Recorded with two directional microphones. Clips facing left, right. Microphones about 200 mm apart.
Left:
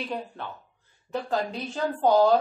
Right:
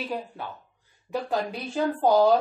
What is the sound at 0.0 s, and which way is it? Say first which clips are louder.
A woman's voice: right 1 dB; 5° right (ahead or behind).